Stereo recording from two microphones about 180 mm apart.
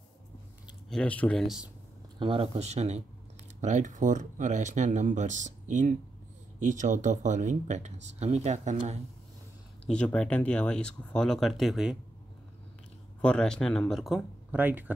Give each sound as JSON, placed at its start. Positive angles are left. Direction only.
{"t": 0.7, "sound": "speech", "side_deg": 0}
{"t": 2.1, "sound": "speech", "side_deg": -30}
{"t": 9.8, "sound": "speech", "side_deg": 5}
{"t": 13.2, "sound": "speech", "side_deg": 5}